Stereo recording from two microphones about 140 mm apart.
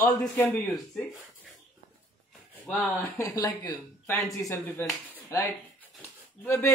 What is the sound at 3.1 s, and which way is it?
A man's voice, 25° left (ahead or behind).